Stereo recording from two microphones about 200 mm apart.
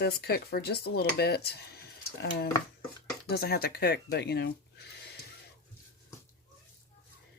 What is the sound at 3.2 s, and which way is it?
Speech, 50° left (ahead or behind).